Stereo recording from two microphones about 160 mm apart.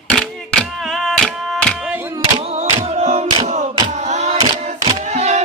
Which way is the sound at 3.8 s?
45° right (ahead or behind).